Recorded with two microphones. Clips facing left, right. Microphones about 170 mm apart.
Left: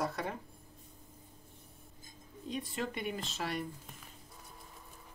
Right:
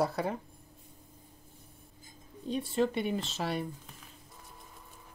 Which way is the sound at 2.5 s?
30° right (ahead or behind).